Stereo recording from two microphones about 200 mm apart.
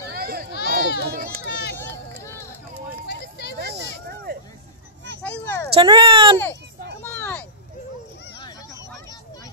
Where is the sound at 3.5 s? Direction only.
55° right (ahead or behind).